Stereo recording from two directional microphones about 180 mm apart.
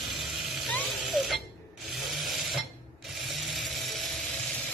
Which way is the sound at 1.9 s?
Centre (ahead or behind).